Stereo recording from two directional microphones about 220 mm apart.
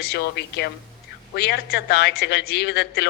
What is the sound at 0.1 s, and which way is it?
A man's voice, 50° left (ahead or behind).